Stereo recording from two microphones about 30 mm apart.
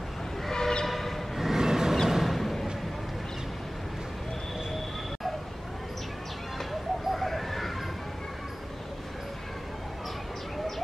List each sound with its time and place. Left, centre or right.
0.5 s train: centre
0.8 s train: centre
1.5 s vehicle: centre
2.0 s a sound: centre
2.3 s a sound: centre
6.7 s bird: centre